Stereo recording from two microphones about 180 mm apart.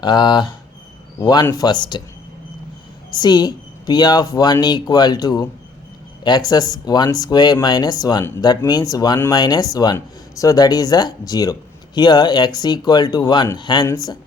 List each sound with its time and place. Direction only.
0.0 s speech: 25° left (ahead or behind)
3.2 s speech: 25° left (ahead or behind)